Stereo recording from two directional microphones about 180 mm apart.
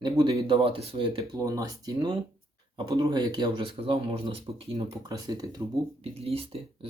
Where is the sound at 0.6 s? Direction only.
35° right (ahead or behind).